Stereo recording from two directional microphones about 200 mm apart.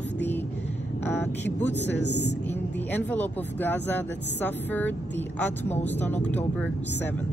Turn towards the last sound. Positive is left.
turn(degrees=10)  # may be behind; listen again after turning